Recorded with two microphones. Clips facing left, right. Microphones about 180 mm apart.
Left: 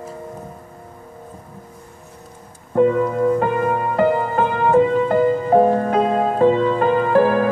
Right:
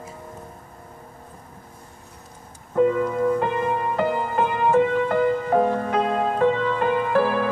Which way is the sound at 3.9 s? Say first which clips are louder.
Left 8 dB; 40° left (ahead or behind).